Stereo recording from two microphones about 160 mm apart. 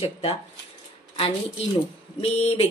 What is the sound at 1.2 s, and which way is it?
Speech, 40° left (ahead or behind).